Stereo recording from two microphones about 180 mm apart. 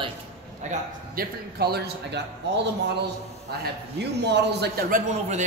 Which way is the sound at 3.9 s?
70° right (ahead or behind).